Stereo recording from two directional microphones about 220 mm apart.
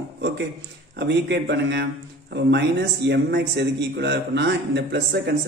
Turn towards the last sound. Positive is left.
turn(degrees=-55)  # may be behind; listen again after turning